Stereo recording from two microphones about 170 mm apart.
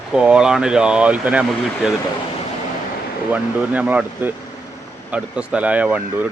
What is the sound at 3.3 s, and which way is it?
Speech, 10° right (ahead or behind).